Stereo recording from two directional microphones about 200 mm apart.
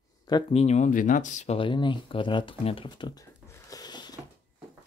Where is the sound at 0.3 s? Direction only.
30° left (ahead or behind).